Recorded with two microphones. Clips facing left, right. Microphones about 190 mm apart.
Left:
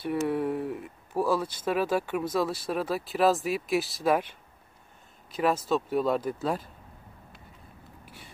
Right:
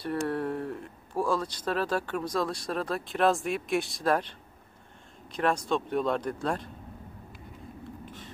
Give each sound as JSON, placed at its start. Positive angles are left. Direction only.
{"t": 0.3, "sound": "speech", "side_deg": 10}
{"t": 8.0, "sound": "vehicle", "side_deg": 10}